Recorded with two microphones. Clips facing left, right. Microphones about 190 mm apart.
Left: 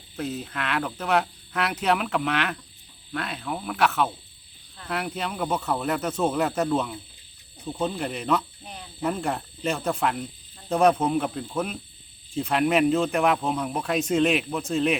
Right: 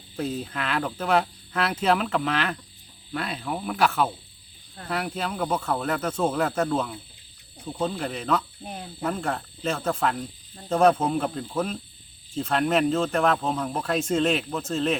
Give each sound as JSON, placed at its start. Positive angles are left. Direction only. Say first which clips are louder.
{"t": 0.2, "sound": "speech", "louder": "right 1 dB", "side_deg": 5}
{"t": 8.6, "sound": "cricket", "louder": "right 5 dB", "side_deg": -45}
{"t": 9.0, "sound": "speech", "louder": "left 1 dB", "side_deg": 5}